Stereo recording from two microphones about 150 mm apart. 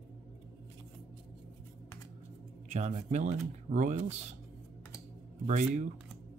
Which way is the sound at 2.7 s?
50° right (ahead or behind).